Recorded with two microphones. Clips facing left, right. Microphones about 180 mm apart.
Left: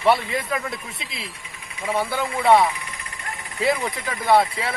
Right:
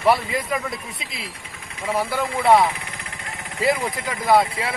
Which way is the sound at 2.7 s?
55° right (ahead or behind).